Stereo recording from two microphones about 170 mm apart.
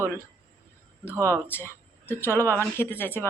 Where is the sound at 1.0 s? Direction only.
15° right (ahead or behind).